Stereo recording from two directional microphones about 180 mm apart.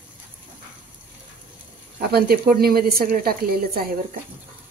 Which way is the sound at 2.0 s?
60° right (ahead or behind).